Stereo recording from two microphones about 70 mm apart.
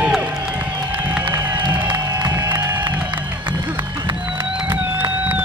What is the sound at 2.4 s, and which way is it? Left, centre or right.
Music, right.